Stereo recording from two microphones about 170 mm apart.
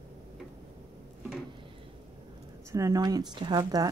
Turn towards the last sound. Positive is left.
turn(degrees=-25)  # may be behind; listen again after turning